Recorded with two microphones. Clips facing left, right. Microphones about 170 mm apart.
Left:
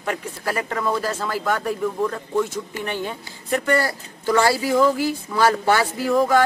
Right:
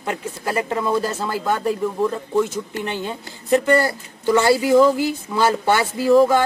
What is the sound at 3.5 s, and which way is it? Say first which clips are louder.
Speech: right 4 dB; 25° right (ahead or behind).